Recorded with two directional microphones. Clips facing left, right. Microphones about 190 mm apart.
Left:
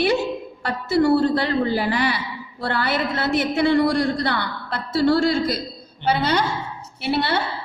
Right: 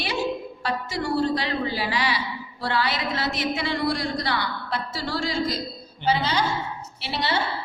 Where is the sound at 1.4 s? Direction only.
50° left (ahead or behind).